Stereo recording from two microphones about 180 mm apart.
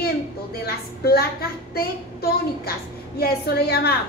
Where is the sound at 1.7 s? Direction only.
55° left (ahead or behind).